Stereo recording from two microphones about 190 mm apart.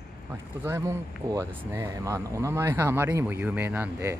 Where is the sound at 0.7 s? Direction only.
15° right (ahead or behind).